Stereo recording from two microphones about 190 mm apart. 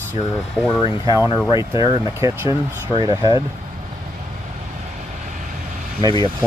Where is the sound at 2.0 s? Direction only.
15° right (ahead or behind).